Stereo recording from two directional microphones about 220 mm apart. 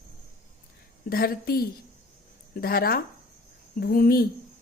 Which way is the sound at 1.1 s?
45° left (ahead or behind).